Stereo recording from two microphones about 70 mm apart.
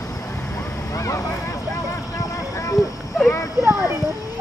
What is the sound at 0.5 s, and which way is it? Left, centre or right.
Vehicle, left.